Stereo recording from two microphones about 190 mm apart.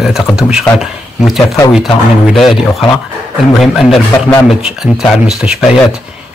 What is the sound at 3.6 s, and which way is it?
Speech, centre (ahead or behind).